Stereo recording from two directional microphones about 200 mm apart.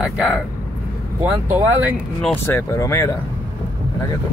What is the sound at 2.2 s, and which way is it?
Speech, 10° left (ahead or behind).